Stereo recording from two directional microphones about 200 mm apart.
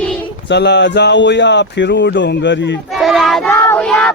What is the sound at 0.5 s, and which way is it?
Speech, 60° left (ahead or behind).